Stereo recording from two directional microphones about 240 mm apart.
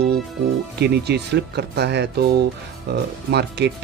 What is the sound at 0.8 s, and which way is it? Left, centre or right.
Speech, right.